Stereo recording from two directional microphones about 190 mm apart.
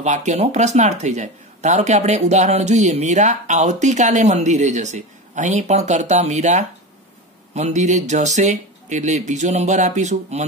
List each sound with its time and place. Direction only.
0.0 s speech: 40° right (ahead or behind)